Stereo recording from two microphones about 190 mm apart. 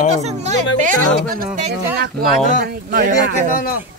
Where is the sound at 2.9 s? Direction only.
45° right (ahead or behind).